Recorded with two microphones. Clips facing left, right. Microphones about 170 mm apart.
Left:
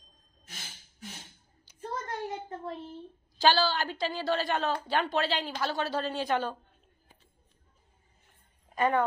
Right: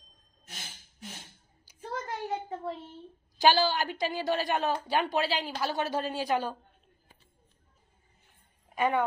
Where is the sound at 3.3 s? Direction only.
15° right (ahead or behind).